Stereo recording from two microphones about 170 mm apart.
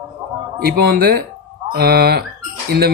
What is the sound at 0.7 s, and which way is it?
Speech, 65° right (ahead or behind).